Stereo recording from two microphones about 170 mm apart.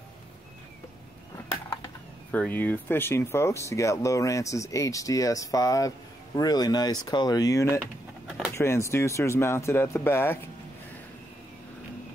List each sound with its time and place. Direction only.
2.3 s speech: 10° left (ahead or behind)